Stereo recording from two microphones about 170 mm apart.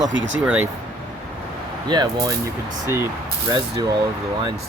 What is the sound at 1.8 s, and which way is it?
Speech, 25° right (ahead or behind).